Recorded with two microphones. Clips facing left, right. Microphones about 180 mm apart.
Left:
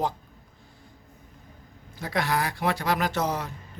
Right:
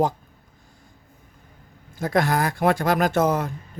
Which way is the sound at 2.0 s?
45° right (ahead or behind).